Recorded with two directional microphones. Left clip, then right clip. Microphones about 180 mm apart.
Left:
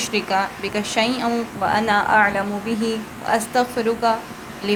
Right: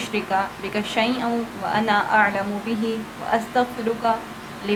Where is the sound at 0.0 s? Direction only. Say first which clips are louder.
Left 2 dB; 35° left (ahead or behind).